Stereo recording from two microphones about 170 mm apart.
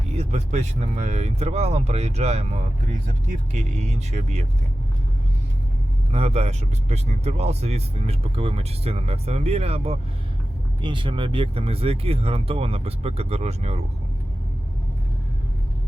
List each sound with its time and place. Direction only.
0.2 s speech: 40° right (ahead or behind)
6.1 s speech: 40° right (ahead or behind)